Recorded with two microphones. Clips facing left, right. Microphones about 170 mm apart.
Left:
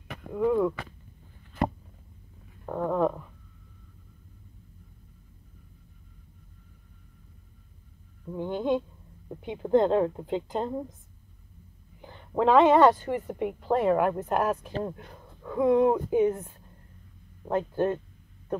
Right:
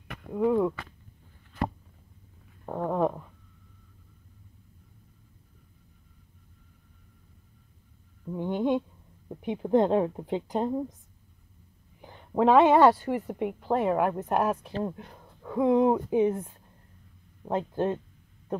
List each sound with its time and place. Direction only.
0.3 s a woman's voice: 15° right (ahead or behind)
2.6 s a sound: 10° right (ahead or behind)
8.3 s a sound: 15° right (ahead or behind)
9.4 s a woman's voice: 15° right (ahead or behind)
12.0 s a woman's voice: 10° right (ahead or behind)
17.5 s a woman's voice: 20° right (ahead or behind)